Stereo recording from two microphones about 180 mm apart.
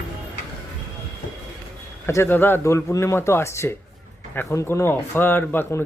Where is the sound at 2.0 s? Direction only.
15° left (ahead or behind).